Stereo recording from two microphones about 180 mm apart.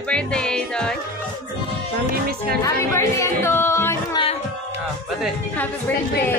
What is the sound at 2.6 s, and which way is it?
Music, 15° left (ahead or behind).